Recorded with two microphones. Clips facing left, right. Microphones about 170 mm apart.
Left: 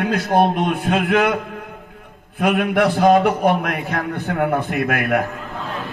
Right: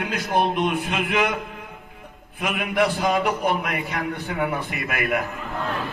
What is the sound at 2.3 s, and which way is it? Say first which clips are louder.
A man's voice: left 6 dB; 50° left (ahead or behind).